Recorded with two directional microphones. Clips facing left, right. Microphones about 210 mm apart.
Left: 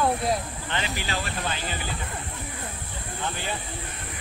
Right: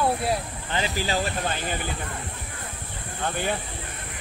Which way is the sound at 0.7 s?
40° right (ahead or behind).